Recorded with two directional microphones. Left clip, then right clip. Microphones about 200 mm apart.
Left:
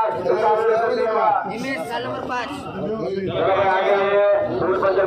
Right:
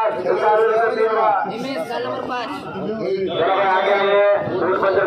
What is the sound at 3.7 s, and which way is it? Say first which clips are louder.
Carnatic music: right 1 dB; 65° left (ahead or behind).